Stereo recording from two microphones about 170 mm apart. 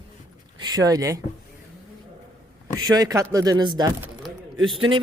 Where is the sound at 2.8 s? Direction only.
25° right (ahead or behind).